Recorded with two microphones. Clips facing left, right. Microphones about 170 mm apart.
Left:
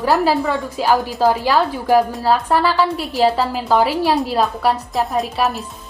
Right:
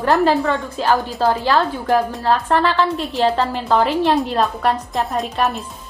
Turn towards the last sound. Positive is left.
turn(degrees=0)  # may be behind; listen again after turning